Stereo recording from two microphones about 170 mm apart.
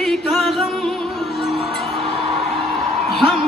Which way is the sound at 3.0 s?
Centre (ahead or behind).